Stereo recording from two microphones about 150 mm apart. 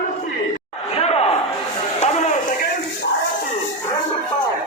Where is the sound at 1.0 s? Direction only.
40° left (ahead or behind).